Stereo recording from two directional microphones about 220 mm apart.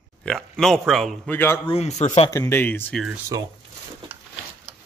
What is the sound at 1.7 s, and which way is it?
Speech, 30° left (ahead or behind).